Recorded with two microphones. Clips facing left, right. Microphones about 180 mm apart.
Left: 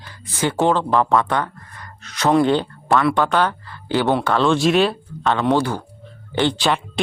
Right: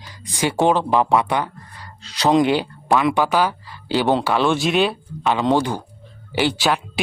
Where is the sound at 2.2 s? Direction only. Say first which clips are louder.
Even; 15° right (ahead or behind).